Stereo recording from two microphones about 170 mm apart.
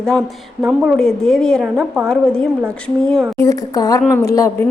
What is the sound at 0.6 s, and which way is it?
A woman's voice, 5° right (ahead or behind).